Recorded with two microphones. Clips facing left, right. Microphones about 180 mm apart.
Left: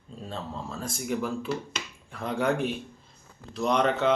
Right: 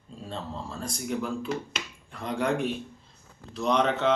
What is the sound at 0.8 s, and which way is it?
Speech, 5° left (ahead or behind).